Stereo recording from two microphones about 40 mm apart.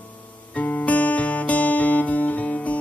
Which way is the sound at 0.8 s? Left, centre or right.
Left.